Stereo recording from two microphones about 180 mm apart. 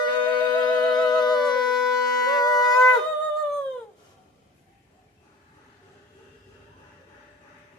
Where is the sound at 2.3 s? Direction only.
20° left (ahead or behind).